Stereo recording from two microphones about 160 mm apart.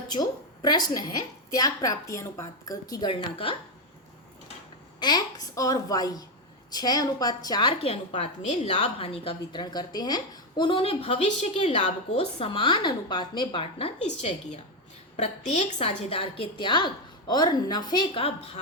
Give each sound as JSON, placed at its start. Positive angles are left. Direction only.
{"t": 0.1, "sound": "a woman's voice", "side_deg": 25}
{"t": 4.9, "sound": "a woman's voice", "side_deg": 25}
{"t": 15.1, "sound": "a woman's voice", "side_deg": 40}